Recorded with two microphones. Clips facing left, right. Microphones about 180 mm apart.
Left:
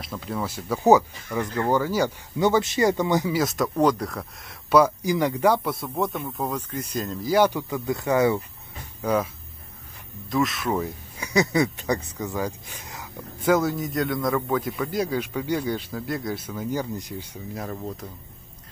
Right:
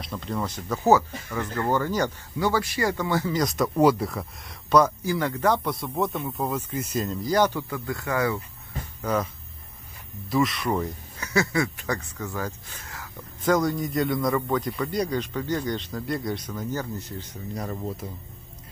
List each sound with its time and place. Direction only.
0.0 s speech: 5° left (ahead or behind)
2.3 s speech: 20° left (ahead or behind)
3.3 s speech: centre (ahead or behind); by 8.4 s 20° left (ahead or behind)
9.0 s speech: 10° left (ahead or behind)
10.3 s speech: centre (ahead or behind)
18.0 s speech: 10° right (ahead or behind)